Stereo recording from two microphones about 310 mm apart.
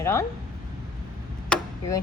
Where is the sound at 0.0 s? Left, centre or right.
Centre.